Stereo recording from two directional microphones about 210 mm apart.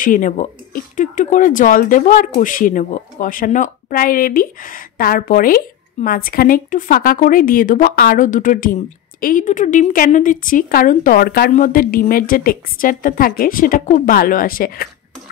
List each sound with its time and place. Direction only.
0.0 s speech: 40° left (ahead or behind)